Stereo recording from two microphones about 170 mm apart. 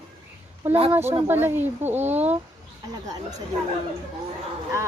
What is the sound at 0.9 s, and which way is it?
Speech, 15° right (ahead or behind).